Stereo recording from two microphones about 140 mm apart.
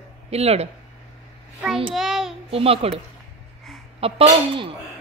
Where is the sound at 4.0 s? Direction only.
40° right (ahead or behind).